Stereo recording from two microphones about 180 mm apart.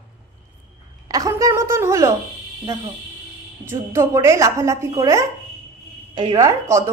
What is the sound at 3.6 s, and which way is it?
A woman's voice, 15° right (ahead or behind).